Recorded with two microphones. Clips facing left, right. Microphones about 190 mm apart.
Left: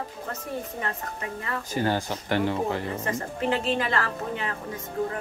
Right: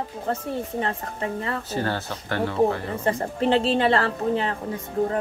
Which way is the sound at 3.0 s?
30° right (ahead or behind).